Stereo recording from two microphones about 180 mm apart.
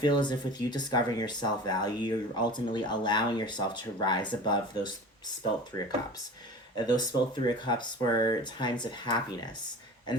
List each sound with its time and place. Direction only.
0.0 s speech: 25° left (ahead or behind)